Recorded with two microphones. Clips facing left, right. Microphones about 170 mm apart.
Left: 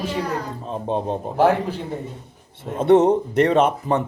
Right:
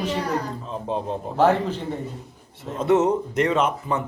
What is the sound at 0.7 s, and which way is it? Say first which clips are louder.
Speech: left 4 dB; 20° left (ahead or behind).